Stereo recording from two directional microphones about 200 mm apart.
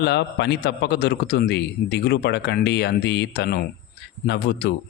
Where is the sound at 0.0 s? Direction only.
55° left (ahead or behind).